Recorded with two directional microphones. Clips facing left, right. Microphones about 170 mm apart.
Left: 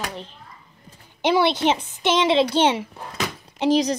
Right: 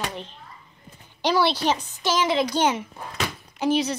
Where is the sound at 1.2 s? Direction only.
20° left (ahead or behind).